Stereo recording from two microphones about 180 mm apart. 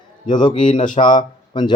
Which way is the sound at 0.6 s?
45° left (ahead or behind).